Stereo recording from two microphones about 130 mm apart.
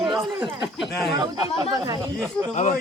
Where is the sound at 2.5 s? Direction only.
70° left (ahead or behind).